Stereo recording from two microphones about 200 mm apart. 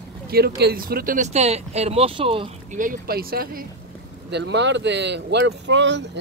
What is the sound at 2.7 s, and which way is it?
Speech, 45° right (ahead or behind).